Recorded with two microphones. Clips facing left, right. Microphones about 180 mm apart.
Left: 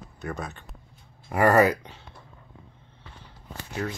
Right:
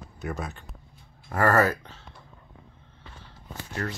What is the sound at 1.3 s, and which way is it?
Speech, 15° left (ahead or behind).